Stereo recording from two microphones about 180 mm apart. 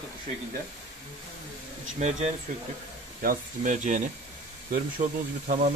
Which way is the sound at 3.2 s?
50° right (ahead or behind).